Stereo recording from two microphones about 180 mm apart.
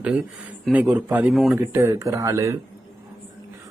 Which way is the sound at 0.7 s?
10° right (ahead or behind).